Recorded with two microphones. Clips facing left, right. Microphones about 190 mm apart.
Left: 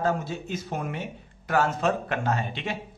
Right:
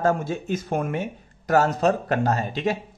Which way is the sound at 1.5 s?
40° right (ahead or behind).